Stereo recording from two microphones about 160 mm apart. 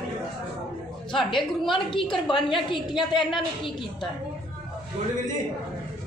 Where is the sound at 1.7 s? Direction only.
30° left (ahead or behind).